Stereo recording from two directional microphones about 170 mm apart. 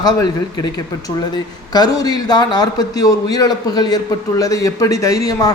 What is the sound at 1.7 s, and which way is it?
Speech, 25° left (ahead or behind).